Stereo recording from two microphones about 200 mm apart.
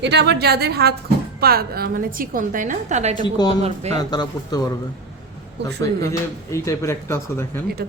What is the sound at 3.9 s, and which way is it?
Speech, 20° left (ahead or behind).